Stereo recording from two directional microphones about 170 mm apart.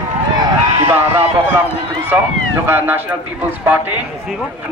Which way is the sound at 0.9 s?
10° right (ahead or behind).